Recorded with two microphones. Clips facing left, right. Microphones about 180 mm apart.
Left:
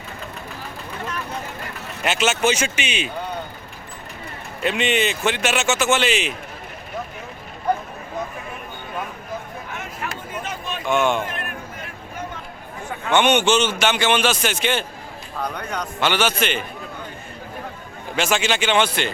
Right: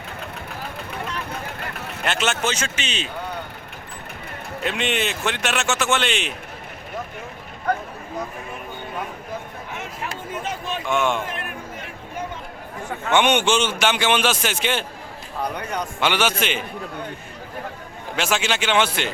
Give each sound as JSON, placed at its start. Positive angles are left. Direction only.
{"t": 2.0, "sound": "speech", "side_deg": 5}
{"t": 4.6, "sound": "a man's voice", "side_deg": 0}
{"t": 10.0, "sound": "a sound", "side_deg": -35}
{"t": 10.8, "sound": "a man's voice", "side_deg": 0}
{"t": 13.1, "sound": "a man's voice", "side_deg": 0}
{"t": 13.6, "sound": "a man's voice", "side_deg": -10}
{"t": 18.2, "sound": "a man's voice", "side_deg": 0}